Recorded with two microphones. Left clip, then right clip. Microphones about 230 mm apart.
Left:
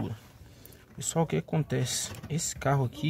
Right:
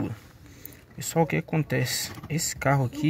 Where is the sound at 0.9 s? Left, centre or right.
Centre.